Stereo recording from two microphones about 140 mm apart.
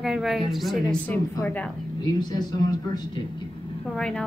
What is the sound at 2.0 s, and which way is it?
Speech, 30° left (ahead or behind).